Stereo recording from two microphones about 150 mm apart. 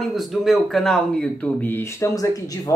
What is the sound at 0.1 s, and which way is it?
Speech, centre (ahead or behind).